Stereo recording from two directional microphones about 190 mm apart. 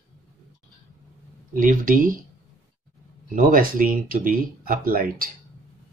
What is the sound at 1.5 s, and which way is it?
Speech, 45° right (ahead or behind).